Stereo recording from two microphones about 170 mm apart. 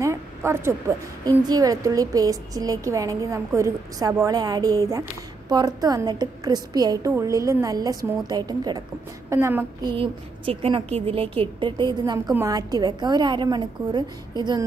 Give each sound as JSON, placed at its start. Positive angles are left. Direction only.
{"t": 0.0, "sound": "a woman's voice", "side_deg": -15}
{"t": 9.3, "sound": "child singing", "side_deg": -15}
{"t": 9.9, "sound": "a woman's voice", "side_deg": -35}